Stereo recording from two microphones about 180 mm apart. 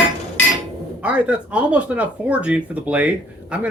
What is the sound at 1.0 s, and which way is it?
Speech, 10° right (ahead or behind).